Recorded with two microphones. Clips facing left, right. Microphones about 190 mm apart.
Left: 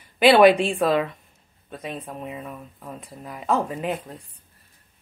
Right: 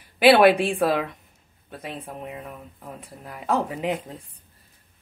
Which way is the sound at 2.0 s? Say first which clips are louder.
Left 1 dB; 15° right (ahead or behind).